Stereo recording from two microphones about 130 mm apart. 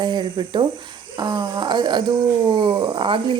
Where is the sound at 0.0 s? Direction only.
35° right (ahead or behind).